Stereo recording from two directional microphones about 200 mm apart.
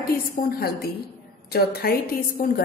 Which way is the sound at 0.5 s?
50° left (ahead or behind).